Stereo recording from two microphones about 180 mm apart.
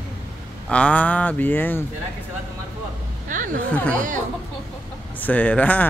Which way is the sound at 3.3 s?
45° right (ahead or behind).